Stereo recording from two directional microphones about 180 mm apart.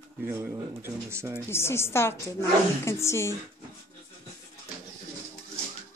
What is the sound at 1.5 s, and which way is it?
A woman's voice, 15° left (ahead or behind).